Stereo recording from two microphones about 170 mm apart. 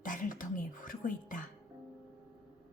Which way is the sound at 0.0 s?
50° left (ahead or behind).